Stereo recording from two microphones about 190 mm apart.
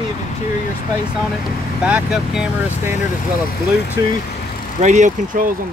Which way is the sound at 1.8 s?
5° right (ahead or behind).